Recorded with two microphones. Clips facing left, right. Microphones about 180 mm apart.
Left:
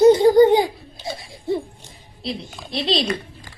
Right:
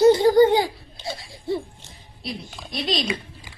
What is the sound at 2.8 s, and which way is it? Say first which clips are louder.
Speech: left 4 dB; 30° left (ahead or behind).